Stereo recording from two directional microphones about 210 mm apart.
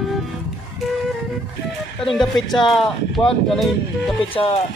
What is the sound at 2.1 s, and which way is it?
Speech, centre (ahead or behind).